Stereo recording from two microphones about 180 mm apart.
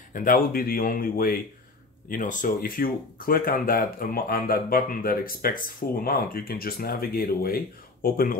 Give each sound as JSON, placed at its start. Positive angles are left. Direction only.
{"t": 0.1, "sound": "speech", "side_deg": 50}